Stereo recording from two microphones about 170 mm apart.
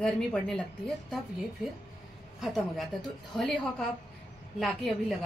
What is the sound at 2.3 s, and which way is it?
Speech, centre (ahead or behind).